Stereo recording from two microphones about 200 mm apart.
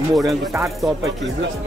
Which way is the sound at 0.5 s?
15° right (ahead or behind).